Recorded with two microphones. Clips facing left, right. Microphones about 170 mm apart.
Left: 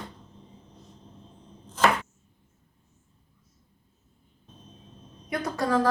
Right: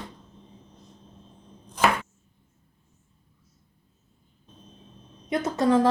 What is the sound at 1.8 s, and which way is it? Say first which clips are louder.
Chopping: even; 15° right (ahead or behind).